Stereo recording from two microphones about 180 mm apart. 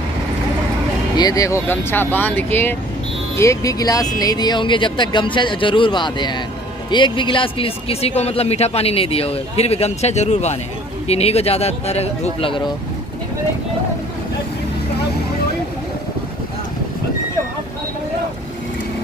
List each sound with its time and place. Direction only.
1.1 s a man's voice: 20° left (ahead or behind)